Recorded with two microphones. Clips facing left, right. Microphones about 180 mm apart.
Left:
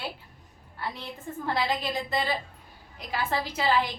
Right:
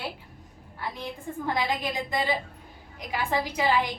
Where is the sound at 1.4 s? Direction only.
15° right (ahead or behind).